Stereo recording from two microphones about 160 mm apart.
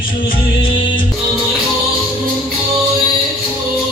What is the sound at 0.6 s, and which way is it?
Music, 30° left (ahead or behind).